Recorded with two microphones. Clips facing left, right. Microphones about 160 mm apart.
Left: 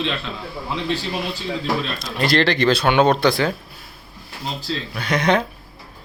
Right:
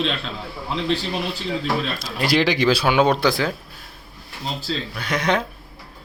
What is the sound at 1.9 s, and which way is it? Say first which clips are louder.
Speech: left 2 dB; 10° right (ahead or behind).